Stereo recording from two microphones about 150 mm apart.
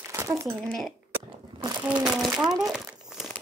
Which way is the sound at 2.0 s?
5° right (ahead or behind).